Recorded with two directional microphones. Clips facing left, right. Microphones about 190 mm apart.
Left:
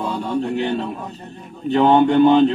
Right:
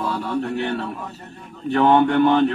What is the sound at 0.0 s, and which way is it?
A man's voice, 20° left (ahead or behind).